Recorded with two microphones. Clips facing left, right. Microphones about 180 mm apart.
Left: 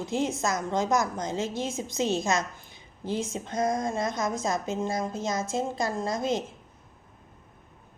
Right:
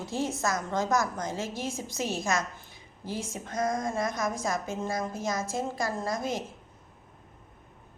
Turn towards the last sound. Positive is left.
turn(degrees=20)  # may be behind; listen again after turning